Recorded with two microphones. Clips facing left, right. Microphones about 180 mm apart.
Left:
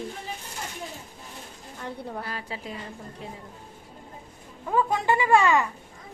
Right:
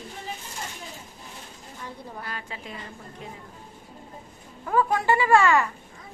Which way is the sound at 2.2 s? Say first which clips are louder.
Left 2 dB; 35° left (ahead or behind).